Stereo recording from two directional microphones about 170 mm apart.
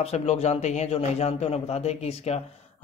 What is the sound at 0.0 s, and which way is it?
A man's voice, 40° left (ahead or behind).